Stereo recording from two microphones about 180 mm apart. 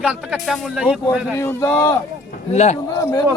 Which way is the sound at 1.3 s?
15° left (ahead or behind).